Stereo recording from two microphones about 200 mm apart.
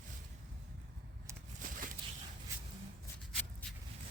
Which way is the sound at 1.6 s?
40° right (ahead or behind).